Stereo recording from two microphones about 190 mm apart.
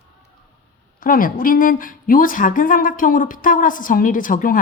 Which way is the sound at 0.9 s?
45° left (ahead or behind).